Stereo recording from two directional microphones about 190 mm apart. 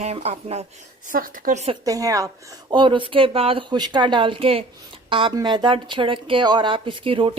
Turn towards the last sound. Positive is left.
turn(degrees=-30)  # may be behind; listen again after turning